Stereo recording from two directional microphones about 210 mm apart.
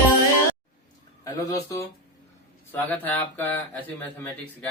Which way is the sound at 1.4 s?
15° left (ahead or behind).